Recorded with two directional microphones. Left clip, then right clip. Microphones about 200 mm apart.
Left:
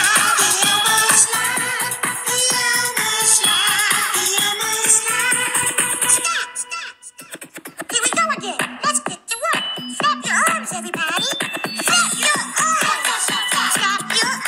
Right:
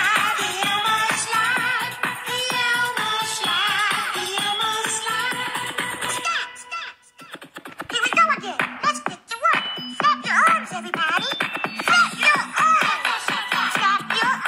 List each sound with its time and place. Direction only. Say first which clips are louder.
0.0 s music: left 4 dB; 45° left (ahead or behind); by 5.7 s 30° left (ahead or behind)
7.9 s music: right 1 dB; 50° left (ahead or behind)